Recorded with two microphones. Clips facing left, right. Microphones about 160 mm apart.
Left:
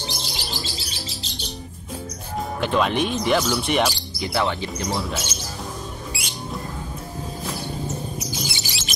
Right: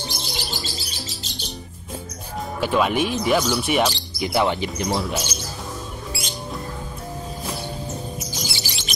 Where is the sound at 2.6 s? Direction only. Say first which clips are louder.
Right 1 dB; 5° right (ahead or behind).